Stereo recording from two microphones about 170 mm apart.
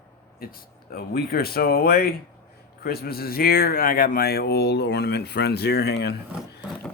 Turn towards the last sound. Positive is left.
turn(degrees=75)  # may be behind; listen again after turning